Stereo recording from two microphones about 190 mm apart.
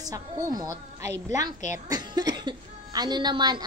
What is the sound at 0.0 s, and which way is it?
A woman's voice, 20° right (ahead or behind).